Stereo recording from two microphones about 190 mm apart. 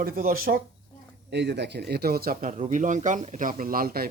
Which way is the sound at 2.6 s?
40° right (ahead or behind).